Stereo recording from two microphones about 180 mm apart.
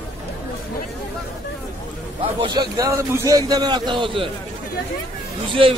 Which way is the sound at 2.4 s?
20° right (ahead or behind).